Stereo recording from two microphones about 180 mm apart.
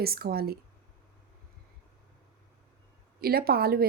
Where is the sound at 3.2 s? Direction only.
55° right (ahead or behind).